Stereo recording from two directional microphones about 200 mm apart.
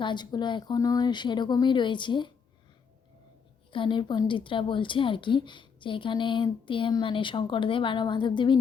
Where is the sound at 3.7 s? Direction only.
25° left (ahead or behind).